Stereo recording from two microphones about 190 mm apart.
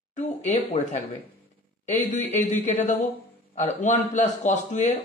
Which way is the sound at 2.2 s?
40° left (ahead or behind).